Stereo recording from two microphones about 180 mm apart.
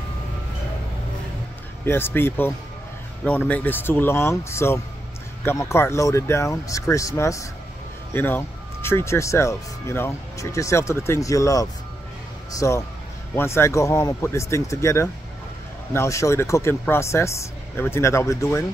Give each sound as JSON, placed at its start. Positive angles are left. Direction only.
{"t": 1.9, "sound": "speech", "side_deg": 10}